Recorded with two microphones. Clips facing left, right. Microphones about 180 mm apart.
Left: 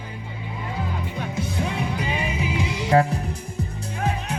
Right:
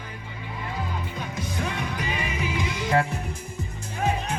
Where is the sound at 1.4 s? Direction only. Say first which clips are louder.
Left 3 dB; 30° left (ahead or behind).